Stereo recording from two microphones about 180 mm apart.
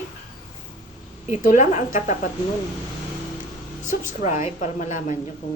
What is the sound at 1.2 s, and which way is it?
Speech, 40° left (ahead or behind).